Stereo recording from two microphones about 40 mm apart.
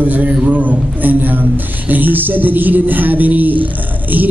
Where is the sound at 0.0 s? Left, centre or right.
Right.